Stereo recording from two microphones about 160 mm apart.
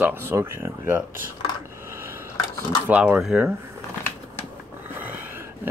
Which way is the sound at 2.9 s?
10° right (ahead or behind).